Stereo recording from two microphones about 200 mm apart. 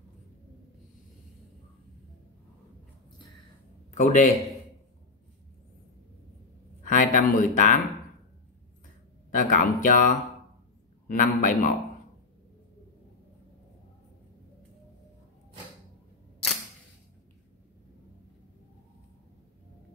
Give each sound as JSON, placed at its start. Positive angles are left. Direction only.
{"t": 3.9, "sound": "a man's voice", "side_deg": 40}
{"t": 6.9, "sound": "speech", "side_deg": 40}
{"t": 9.3, "sound": "a man's voice", "side_deg": 40}